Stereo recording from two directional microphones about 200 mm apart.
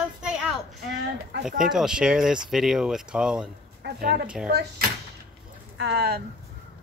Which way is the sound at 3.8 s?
50° right (ahead or behind).